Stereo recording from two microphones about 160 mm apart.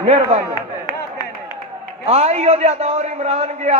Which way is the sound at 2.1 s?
40° right (ahead or behind).